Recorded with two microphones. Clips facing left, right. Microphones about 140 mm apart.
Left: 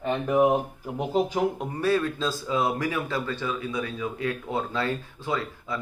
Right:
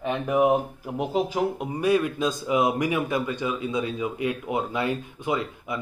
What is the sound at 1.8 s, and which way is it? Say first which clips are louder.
Speech: right 2 dB; 15° right (ahead or behind).